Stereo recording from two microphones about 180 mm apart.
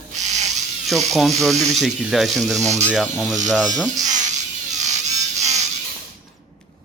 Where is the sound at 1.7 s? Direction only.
Centre (ahead or behind).